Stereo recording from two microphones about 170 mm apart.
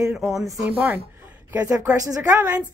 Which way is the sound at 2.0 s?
20° right (ahead or behind).